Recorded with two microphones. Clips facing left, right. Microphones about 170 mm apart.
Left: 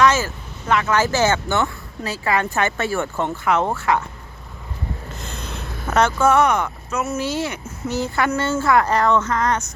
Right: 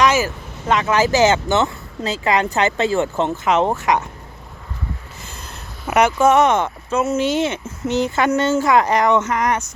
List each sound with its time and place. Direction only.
0.0 s vehicle: 15° right (ahead or behind)
0.7 s speech: 20° right (ahead or behind)
5.2 s a sound: 65° left (ahead or behind)
5.9 s speech: 15° right (ahead or behind)